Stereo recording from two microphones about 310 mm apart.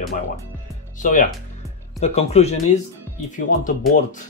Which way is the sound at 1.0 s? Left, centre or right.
Left.